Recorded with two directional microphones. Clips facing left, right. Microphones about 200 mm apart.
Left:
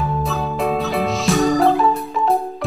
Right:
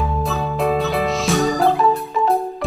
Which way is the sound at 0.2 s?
Centre (ahead or behind).